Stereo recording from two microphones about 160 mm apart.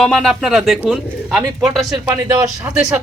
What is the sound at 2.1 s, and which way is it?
Speech, 20° right (ahead or behind).